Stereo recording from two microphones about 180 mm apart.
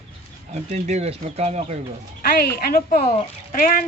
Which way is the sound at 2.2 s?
60° left (ahead or behind).